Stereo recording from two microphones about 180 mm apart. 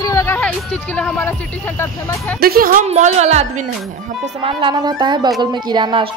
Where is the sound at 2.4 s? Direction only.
55° right (ahead or behind).